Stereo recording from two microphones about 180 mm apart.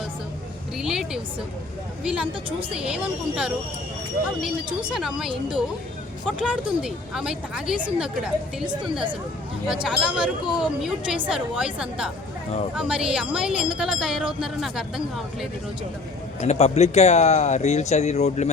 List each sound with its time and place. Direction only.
0.8 s vehicle: 5° right (ahead or behind)
2.0 s speech: 5° right (ahead or behind)
4.9 s speech: centre (ahead or behind)
8.6 s a woman's voice: 25° right (ahead or behind)
9.8 s speech: 5° right (ahead or behind)
16.4 s speech: 40° left (ahead or behind)